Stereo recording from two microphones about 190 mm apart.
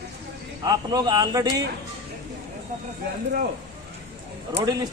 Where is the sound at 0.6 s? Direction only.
20° right (ahead or behind).